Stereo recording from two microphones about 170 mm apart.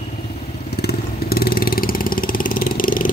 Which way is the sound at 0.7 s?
70° left (ahead or behind).